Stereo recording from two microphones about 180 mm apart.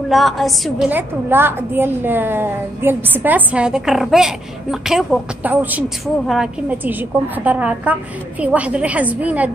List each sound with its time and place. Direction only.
0.1 s a woman's voice: centre (ahead or behind)